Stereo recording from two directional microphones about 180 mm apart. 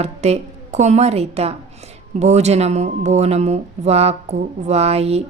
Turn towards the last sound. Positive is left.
turn(degrees=-35)  # may be behind; listen again after turning